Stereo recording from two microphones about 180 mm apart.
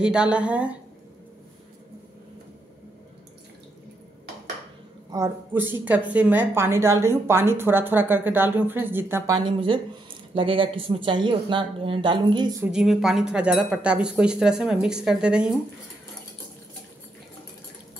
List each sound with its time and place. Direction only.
0.0 s a woman's voice: 5° right (ahead or behind)
5.1 s a woman's voice: 15° right (ahead or behind)
12.6 s speech: centre (ahead or behind)